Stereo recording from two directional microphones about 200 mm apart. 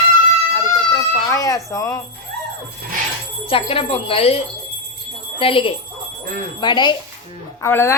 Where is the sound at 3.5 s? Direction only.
30° left (ahead or behind).